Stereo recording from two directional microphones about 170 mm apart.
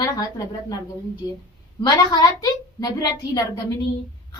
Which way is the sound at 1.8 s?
20° left (ahead or behind).